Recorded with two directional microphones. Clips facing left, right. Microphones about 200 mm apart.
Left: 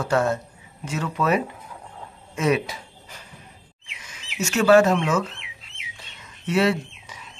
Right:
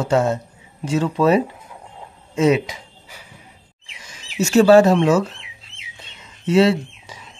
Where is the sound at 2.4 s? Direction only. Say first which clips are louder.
Right 5 dB; 25° right (ahead or behind).